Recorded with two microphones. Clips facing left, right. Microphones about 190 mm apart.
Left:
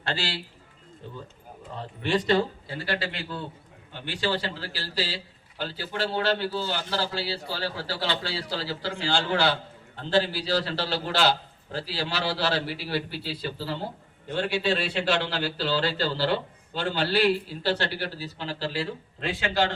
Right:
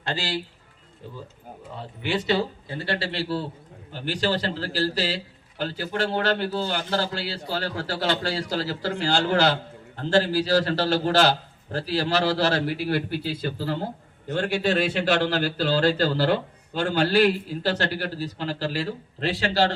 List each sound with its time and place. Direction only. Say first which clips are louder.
0.0 s a man's voice: right 2 dB; 15° right (ahead or behind)
2.0 s speech: left 1 dB; 5° right (ahead or behind)
2.6 s a man's voice: right 2 dB; 25° right (ahead or behind)